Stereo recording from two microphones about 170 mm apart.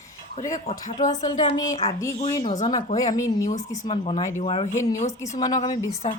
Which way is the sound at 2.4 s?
35° left (ahead or behind).